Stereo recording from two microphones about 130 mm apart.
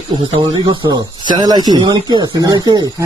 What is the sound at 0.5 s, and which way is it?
A man's voice, 35° right (ahead or behind).